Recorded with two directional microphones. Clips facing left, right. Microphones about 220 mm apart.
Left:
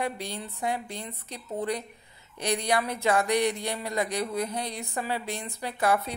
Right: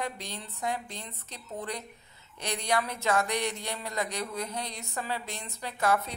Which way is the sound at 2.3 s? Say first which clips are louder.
Left 3 dB; 15° left (ahead or behind).